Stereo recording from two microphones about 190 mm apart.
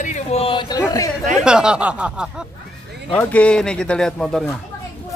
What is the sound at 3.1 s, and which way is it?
Speech, 5° left (ahead or behind).